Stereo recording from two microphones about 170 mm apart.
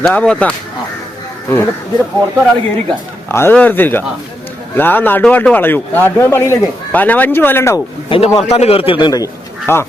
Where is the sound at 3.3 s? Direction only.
10° left (ahead or behind).